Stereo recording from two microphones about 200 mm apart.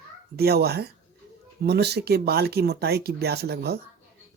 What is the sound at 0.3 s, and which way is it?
Speech, 50° right (ahead or behind).